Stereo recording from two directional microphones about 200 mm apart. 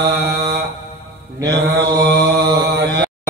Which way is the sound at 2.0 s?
55° right (ahead or behind).